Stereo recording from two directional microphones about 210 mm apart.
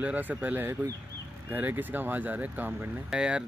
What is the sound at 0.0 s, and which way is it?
Speech, 5° right (ahead or behind).